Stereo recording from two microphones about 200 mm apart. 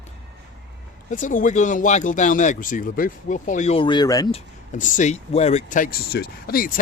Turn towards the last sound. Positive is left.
turn(degrees=45)  # may be behind; listen again after turning